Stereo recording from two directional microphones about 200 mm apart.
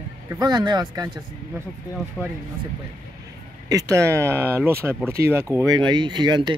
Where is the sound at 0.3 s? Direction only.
20° right (ahead or behind).